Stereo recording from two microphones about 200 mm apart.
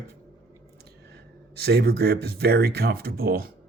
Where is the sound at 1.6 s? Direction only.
50° right (ahead or behind).